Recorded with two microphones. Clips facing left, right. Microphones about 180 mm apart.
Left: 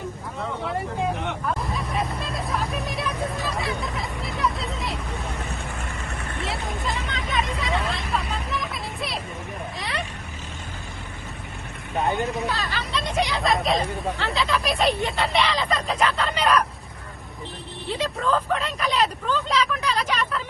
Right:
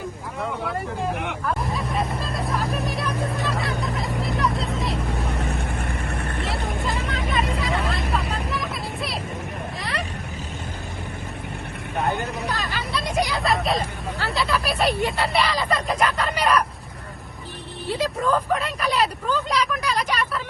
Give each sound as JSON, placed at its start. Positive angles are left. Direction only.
{"t": 1.6, "sound": "vehicle", "side_deg": 0}
{"t": 5.4, "sound": "vehicle", "side_deg": -60}
{"t": 6.4, "sound": "vehicle", "side_deg": 0}
{"t": 12.1, "sound": "speech", "side_deg": 0}
{"t": 12.6, "sound": "hubbub", "side_deg": -10}
{"t": 14.4, "sound": "speech", "side_deg": -5}
{"t": 17.8, "sound": "speech", "side_deg": -10}